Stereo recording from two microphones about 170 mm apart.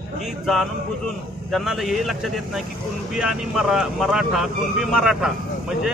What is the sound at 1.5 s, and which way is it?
Speech, centre (ahead or behind).